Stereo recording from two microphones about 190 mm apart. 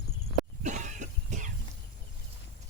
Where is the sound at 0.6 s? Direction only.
40° right (ahead or behind).